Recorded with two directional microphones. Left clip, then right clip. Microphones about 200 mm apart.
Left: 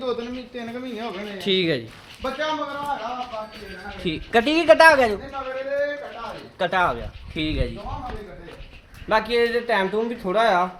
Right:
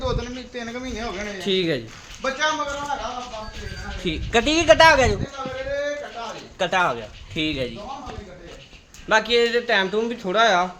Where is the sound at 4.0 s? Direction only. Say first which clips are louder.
Left 1 dB; centre (ahead or behind).